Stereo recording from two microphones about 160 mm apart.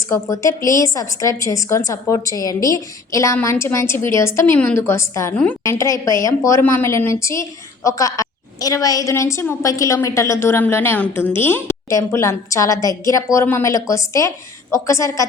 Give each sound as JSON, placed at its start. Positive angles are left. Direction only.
{"t": 0.1, "sound": "a woman's voice", "side_deg": 20}